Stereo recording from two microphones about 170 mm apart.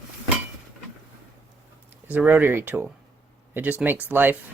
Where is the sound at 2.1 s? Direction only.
10° right (ahead or behind).